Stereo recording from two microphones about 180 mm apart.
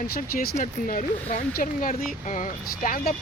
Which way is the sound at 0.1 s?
50° left (ahead or behind).